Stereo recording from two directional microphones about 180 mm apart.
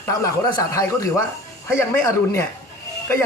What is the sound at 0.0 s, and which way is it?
A man's voice, 15° left (ahead or behind).